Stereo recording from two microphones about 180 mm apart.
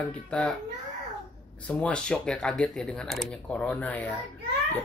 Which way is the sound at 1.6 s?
5° left (ahead or behind).